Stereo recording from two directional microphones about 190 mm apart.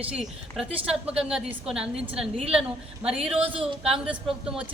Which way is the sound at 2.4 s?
30° right (ahead or behind).